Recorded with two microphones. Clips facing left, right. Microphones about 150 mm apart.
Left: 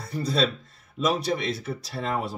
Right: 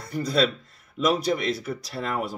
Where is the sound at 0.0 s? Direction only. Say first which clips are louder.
Right 2 dB; 30° left (ahead or behind).